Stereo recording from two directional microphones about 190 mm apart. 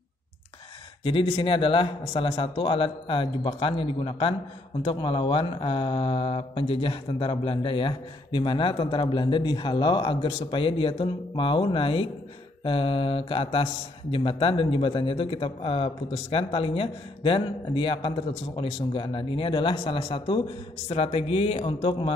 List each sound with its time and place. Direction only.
1.0 s speech: 25° left (ahead or behind)